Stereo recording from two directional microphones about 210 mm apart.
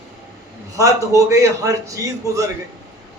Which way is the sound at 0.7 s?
15° right (ahead or behind).